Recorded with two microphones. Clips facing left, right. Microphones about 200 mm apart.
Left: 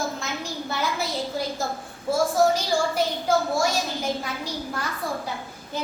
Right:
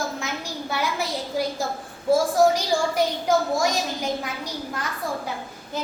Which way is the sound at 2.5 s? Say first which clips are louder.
Right 1 dB; 15° right (ahead or behind).